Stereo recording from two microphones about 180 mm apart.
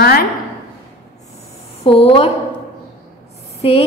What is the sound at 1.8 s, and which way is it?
Speech, 30° left (ahead or behind).